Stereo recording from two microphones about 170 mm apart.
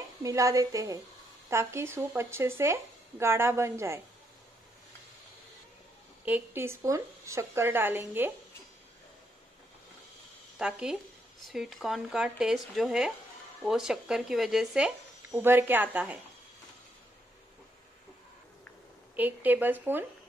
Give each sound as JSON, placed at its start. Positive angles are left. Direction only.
{"t": 0.2, "sound": "a woman's voice", "side_deg": -20}
{"t": 6.2, "sound": "speech", "side_deg": -10}
{"t": 10.6, "sound": "speech", "side_deg": -5}
{"t": 15.3, "sound": "speech", "side_deg": -10}
{"t": 19.1, "sound": "speech", "side_deg": -10}